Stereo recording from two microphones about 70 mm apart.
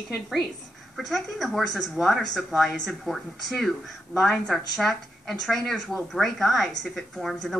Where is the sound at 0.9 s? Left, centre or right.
Centre.